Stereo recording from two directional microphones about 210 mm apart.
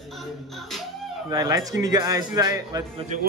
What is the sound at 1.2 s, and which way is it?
Speech, 15° right (ahead or behind).